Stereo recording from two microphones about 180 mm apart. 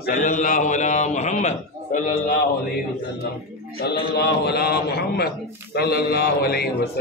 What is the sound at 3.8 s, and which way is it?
A man's voice, 65° left (ahead or behind).